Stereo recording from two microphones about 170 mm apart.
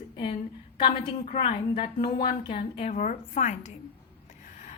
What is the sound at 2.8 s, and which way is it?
Speech, 45° left (ahead or behind).